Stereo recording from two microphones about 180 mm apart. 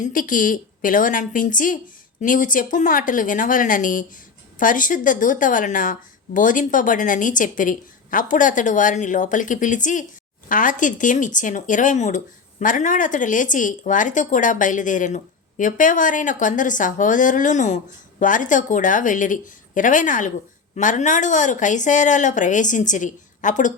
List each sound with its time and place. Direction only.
0.0 s speech: 50° left (ahead or behind)